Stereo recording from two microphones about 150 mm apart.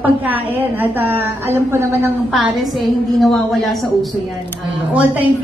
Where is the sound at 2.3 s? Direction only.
Centre (ahead or behind).